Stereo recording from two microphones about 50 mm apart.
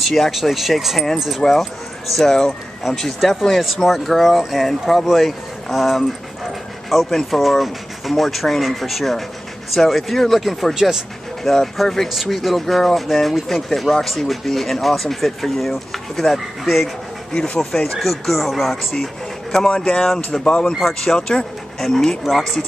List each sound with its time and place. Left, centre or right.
0.0 s speech: centre
1.4 s speech: centre
19.7 s speech: centre
20.7 s speech: centre